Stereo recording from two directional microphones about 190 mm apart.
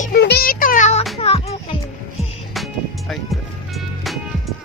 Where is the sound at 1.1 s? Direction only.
30° left (ahead or behind).